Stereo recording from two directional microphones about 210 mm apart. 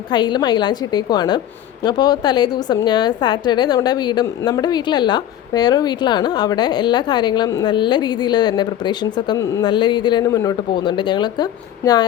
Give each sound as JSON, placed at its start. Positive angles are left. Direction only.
{"t": 0.1, "sound": "a woman's voice", "side_deg": 20}